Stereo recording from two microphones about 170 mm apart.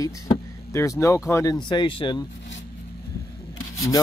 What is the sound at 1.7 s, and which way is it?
Speech, 30° left (ahead or behind).